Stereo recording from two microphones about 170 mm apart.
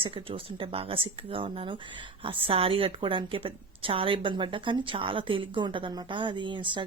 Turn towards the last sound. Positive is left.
turn(degrees=-30)  # may be behind; listen again after turning